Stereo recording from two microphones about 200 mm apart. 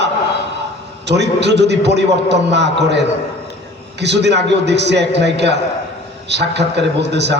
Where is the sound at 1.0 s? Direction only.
60° right (ahead or behind).